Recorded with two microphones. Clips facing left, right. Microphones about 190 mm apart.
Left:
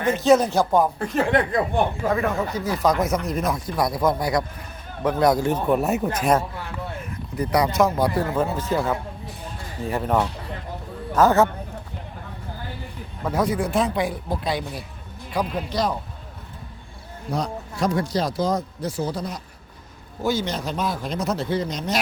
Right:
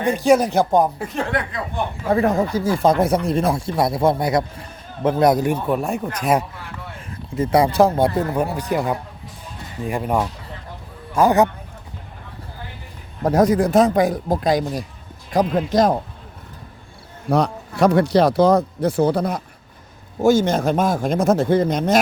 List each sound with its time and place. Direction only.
0.0 s speech: 15° right (ahead or behind)
0.9 s speech: 5° right (ahead or behind)
2.0 s speech: 35° right (ahead or behind); by 5.5 s 20° right (ahead or behind)
5.6 s speech: centre (ahead or behind)
7.3 s speech: 25° right (ahead or behind)
13.2 s speech: 40° right (ahead or behind)
17.2 s speech: 65° right (ahead or behind)
20.2 s speech: 45° right (ahead or behind)